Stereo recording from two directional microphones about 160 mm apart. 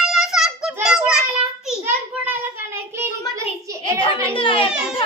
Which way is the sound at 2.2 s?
15° right (ahead or behind).